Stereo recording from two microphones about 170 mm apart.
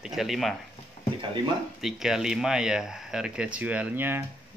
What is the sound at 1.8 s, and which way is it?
Speech, centre (ahead or behind).